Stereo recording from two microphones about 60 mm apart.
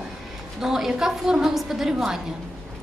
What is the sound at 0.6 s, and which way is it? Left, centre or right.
A woman's voice, centre.